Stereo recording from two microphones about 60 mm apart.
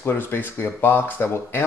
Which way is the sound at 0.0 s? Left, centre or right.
Left.